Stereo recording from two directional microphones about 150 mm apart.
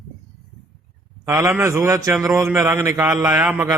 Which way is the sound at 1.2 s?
20° right (ahead or behind).